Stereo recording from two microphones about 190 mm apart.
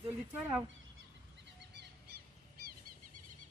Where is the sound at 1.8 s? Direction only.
60° right (ahead or behind).